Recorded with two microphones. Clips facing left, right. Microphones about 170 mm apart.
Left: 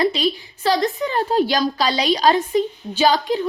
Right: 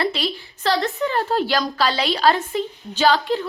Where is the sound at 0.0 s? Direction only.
15° left (ahead or behind).